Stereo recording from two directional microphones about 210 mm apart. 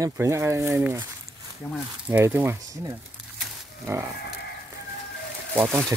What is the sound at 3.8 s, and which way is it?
Speech, 10° right (ahead or behind).